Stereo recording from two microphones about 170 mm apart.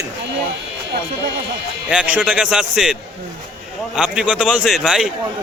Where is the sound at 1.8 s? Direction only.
5° right (ahead or behind).